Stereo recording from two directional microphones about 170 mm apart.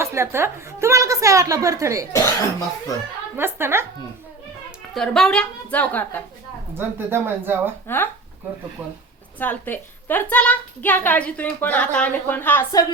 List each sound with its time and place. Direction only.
0.0 s a woman's voice: 15° right (ahead or behind)
2.1 s speech: 20° left (ahead or behind)
3.3 s speech: 15° right (ahead or behind)
4.9 s a woman's voice: 5° left (ahead or behind)
6.7 s speech: 10° right (ahead or behind)
7.9 s a woman's voice: 10° left (ahead or behind)
9.4 s a woman's voice: 10° left (ahead or behind)